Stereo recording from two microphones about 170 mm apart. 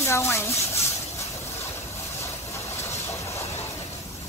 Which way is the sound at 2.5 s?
15° left (ahead or behind).